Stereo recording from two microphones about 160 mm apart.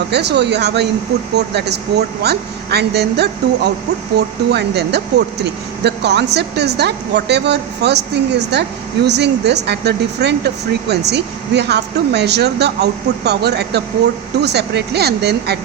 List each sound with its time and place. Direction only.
0.1 s speech: 90° right